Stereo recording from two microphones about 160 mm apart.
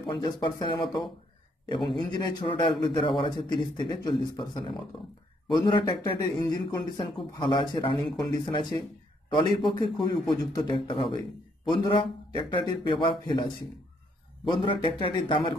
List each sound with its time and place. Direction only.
0.0 s a man's voice: 30° left (ahead or behind)
14.5 s speech: 30° left (ahead or behind)